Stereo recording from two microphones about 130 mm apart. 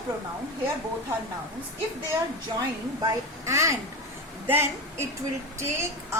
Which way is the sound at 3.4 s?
25° right (ahead or behind).